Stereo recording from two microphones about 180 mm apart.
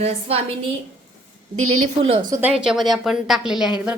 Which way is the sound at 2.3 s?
5° right (ahead or behind).